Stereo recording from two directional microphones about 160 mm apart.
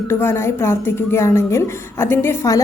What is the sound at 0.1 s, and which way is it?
A woman's voice, 15° left (ahead or behind).